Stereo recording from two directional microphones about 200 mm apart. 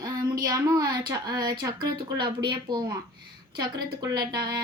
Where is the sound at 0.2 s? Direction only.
20° right (ahead or behind).